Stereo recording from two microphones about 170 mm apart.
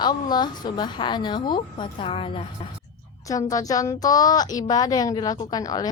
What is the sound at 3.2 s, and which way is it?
A woman's voice, 20° left (ahead or behind).